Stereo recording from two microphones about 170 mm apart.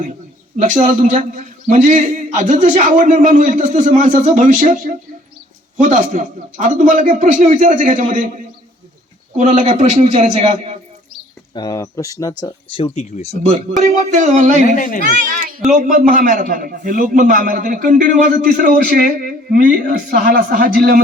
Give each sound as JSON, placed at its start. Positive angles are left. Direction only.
{"t": 0.5, "sound": "a man's voice", "side_deg": -45}
{"t": 9.4, "sound": "a man's voice", "side_deg": -45}
{"t": 11.5, "sound": "speech", "side_deg": 20}
{"t": 13.7, "sound": "a man's voice", "side_deg": -45}
{"t": 14.8, "sound": "speech", "side_deg": 50}
{"t": 15.3, "sound": "a child's voice", "side_deg": -50}